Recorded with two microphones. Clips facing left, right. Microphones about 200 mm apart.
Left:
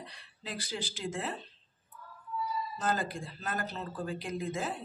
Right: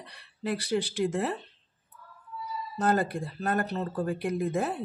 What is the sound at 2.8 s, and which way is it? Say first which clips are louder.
Speech: right 9 dB; 60° right (ahead or behind).